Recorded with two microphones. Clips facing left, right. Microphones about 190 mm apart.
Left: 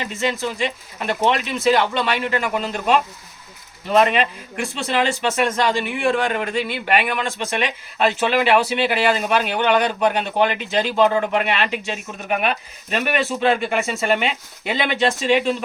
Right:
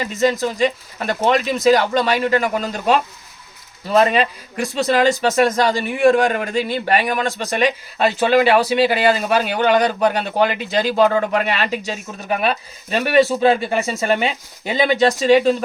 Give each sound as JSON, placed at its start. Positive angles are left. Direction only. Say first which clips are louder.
{"t": 0.0, "sound": "speech", "louder": "right 5 dB", "side_deg": -40}
{"t": 4.1, "sound": "speech", "louder": "right 2 dB", "side_deg": -35}